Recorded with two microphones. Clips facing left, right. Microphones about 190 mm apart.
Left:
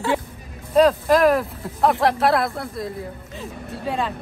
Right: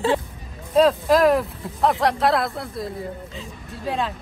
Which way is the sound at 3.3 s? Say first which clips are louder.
Left 4 dB; 65° left (ahead or behind).